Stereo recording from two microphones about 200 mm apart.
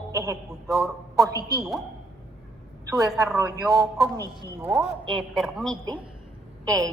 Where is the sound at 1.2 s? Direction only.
20° right (ahead or behind).